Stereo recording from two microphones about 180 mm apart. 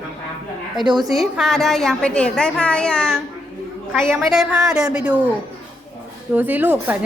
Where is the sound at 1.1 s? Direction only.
Centre (ahead or behind).